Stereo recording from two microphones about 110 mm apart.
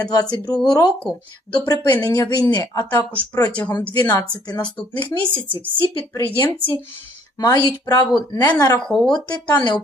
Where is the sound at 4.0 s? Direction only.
30° left (ahead or behind).